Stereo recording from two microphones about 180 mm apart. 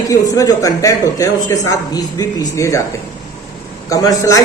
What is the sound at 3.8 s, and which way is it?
Speech, 20° left (ahead or behind).